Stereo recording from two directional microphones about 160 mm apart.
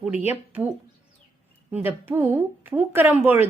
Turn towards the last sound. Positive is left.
turn(degrees=-15)  # may be behind; listen again after turning